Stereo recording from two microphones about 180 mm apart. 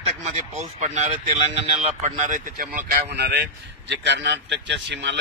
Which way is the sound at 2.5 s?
60° right (ahead or behind).